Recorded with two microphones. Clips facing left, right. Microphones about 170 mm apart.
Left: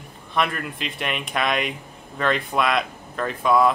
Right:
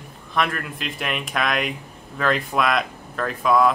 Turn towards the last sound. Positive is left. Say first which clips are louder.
# even
turn(degrees=0)  # may be behind; listen again after turning